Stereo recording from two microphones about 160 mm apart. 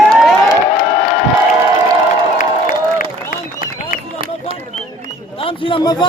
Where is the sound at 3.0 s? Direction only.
60° left (ahead or behind).